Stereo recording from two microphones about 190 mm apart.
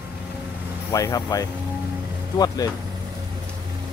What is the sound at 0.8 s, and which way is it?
Speech, 15° left (ahead or behind).